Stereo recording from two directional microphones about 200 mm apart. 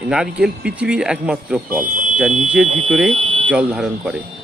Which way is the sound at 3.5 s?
5° right (ahead or behind).